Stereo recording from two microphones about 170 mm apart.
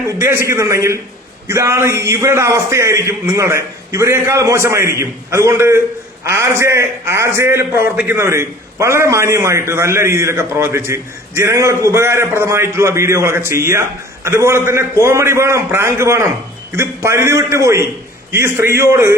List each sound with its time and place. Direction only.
0.4 s a man's voice: 15° right (ahead or behind)